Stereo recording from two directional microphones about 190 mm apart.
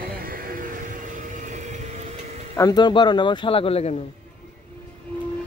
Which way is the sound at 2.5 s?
20° left (ahead or behind).